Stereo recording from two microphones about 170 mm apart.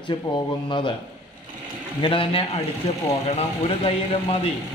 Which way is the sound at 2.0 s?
30° left (ahead or behind).